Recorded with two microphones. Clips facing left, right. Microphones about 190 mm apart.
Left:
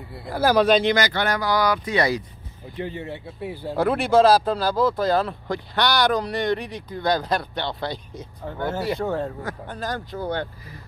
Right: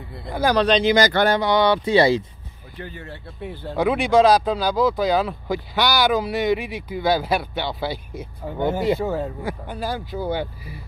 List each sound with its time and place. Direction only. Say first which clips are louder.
0.1 s speech: left 1 dB; 5° left (ahead or behind)
1.2 s speech: right 4 dB; 25° right (ahead or behind)
2.8 s speech: left 5 dB; 20° left (ahead or behind)
3.3 s speech: left 2 dB; 5° left (ahead or behind); by 9.0 s 20° right (ahead or behind)
9.0 s speech: right 1 dB; 5° right (ahead or behind)